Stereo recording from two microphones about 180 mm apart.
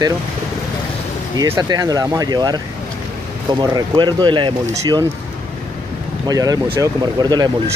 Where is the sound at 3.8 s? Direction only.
25° right (ahead or behind).